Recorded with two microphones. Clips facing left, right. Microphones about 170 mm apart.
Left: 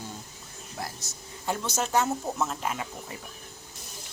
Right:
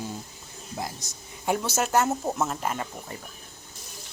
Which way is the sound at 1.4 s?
5° right (ahead or behind).